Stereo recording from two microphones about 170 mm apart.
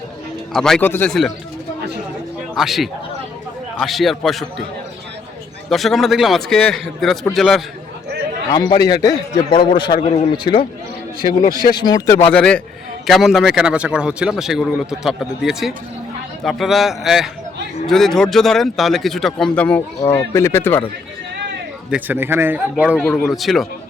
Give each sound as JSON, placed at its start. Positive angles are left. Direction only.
{"t": 0.5, "sound": "speech", "side_deg": 5}
{"t": 2.6, "sound": "speech", "side_deg": 0}
{"t": 5.7, "sound": "speech", "side_deg": 0}
{"t": 8.4, "sound": "a man's voice", "side_deg": 25}
{"t": 11.7, "sound": "a man's voice", "side_deg": 25}
{"t": 12.3, "sound": "speech", "side_deg": 5}
{"t": 21.8, "sound": "speech", "side_deg": -10}
{"t": 23.0, "sound": "speech", "side_deg": 10}
{"t": 23.2, "sound": "speech", "side_deg": 0}